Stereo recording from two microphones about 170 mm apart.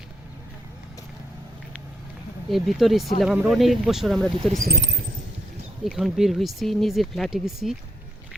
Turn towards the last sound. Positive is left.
turn(degrees=0)  # may be behind; listen again after turning